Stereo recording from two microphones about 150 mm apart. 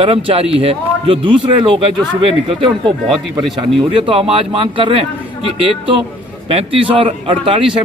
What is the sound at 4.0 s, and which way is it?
A man's voice, 40° right (ahead or behind).